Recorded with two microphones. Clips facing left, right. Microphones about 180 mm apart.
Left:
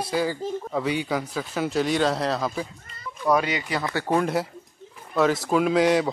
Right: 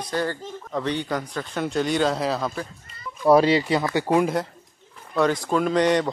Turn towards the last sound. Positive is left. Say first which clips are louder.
# even
turn(degrees=5)  # may be behind; listen again after turning